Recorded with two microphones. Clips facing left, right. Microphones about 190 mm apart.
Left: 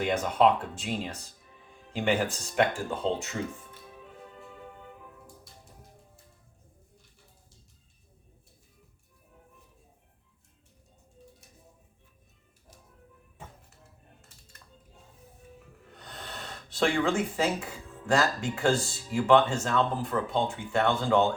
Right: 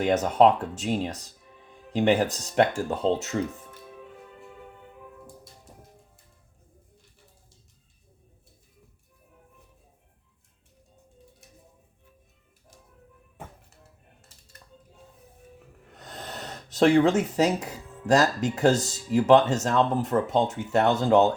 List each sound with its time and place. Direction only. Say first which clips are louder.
0.0 s speech: right 4 dB; 40° right (ahead or behind)
16.0 s speech: right 4 dB; 45° right (ahead or behind)